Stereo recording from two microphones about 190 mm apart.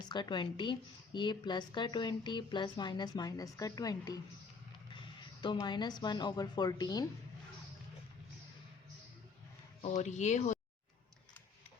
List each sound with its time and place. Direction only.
0.1 s a woman's voice: 25° left (ahead or behind)
9.8 s speech: 40° left (ahead or behind)